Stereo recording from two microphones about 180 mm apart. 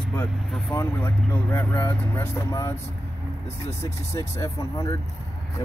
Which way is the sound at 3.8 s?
15° left (ahead or behind).